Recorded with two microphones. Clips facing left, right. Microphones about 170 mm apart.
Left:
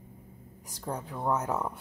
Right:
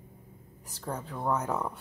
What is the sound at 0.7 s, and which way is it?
A woman's voice, 10° left (ahead or behind).